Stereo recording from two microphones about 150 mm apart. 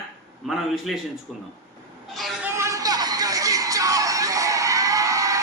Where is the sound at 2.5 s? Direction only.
20° right (ahead or behind).